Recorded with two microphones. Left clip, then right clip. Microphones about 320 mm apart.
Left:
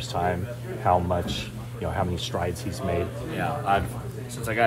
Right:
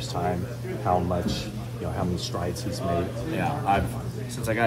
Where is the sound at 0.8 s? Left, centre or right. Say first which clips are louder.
Left 2 dB; left.